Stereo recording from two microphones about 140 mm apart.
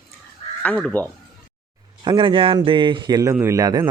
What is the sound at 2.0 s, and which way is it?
A man's voice, 35° right (ahead or behind).